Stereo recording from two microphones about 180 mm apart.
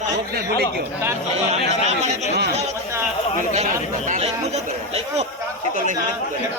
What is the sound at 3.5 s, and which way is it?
Speech, 40° right (ahead or behind).